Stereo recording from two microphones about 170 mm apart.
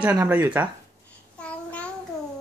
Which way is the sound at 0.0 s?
10° right (ahead or behind).